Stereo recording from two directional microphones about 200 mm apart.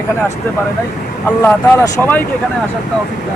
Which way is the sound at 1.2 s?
10° left (ahead or behind).